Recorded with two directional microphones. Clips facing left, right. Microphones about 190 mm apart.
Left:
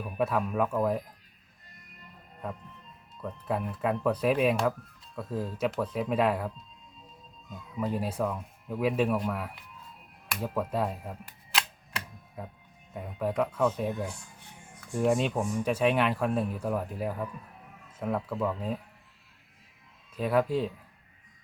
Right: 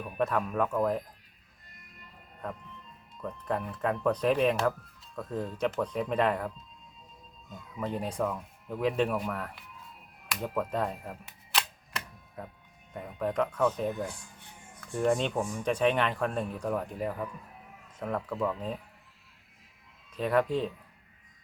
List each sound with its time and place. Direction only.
0.0 s speech: 5° left (ahead or behind)
3.2 s speech: 5° left (ahead or behind)
7.8 s speech: 5° left (ahead or behind)
10.2 s camera: 5° left (ahead or behind)
12.9 s speech: 5° left (ahead or behind)
20.1 s speech: 5° left (ahead or behind)